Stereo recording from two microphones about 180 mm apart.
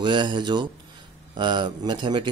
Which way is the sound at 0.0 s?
25° right (ahead or behind).